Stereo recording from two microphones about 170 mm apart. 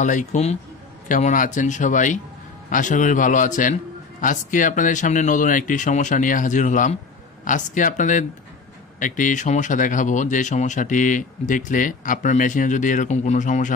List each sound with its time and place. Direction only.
0.0 s speech: 45° left (ahead or behind)